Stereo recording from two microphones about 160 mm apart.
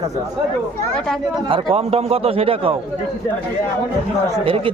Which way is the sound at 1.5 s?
40° right (ahead or behind).